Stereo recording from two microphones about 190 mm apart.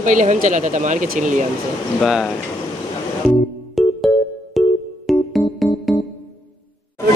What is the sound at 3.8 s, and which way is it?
Music, centre (ahead or behind).